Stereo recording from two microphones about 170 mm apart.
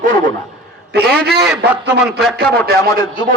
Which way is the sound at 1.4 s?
5° right (ahead or behind).